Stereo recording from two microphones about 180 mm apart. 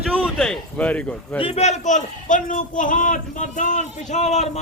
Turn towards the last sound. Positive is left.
turn(degrees=40)  # may be behind; listen again after turning